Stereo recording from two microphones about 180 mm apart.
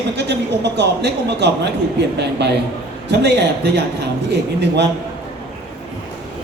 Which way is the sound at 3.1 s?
70° right (ahead or behind).